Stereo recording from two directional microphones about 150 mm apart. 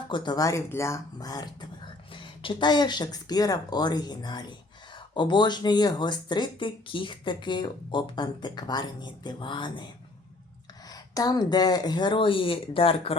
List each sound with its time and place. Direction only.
0.1 s speech: 30° left (ahead or behind)